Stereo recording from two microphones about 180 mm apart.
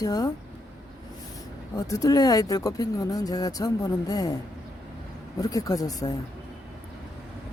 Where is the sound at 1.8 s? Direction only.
20° left (ahead or behind).